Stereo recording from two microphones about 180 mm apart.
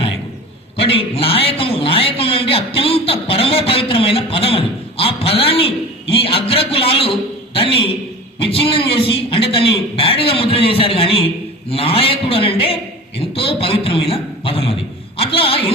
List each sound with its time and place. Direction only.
0.8 s a man's voice: 30° left (ahead or behind)